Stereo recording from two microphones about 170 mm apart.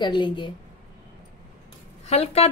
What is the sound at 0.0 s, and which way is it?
Speech, 30° left (ahead or behind).